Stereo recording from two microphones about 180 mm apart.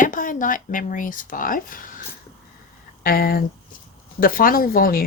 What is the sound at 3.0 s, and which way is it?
Speech, 55° left (ahead or behind).